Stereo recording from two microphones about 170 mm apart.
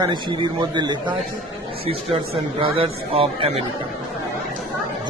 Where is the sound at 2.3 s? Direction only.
30° right (ahead or behind).